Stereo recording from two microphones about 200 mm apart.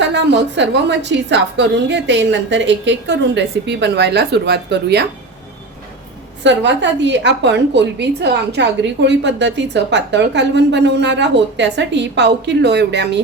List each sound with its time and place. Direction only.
0.0 s a woman's voice: 60° right (ahead or behind)
6.4 s a woman's voice: 60° right (ahead or behind)